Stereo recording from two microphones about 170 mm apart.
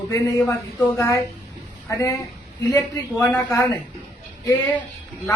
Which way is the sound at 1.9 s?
15° left (ahead or behind).